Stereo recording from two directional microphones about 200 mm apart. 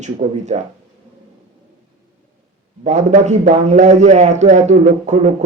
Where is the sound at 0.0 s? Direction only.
35° right (ahead or behind).